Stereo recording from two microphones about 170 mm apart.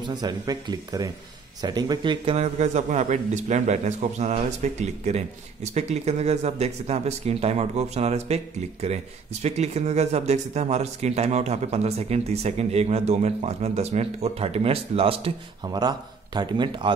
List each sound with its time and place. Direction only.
0.0 s speech: 25° right (ahead or behind)